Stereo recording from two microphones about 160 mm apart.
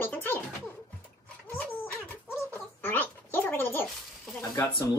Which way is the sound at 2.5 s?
10° left (ahead or behind).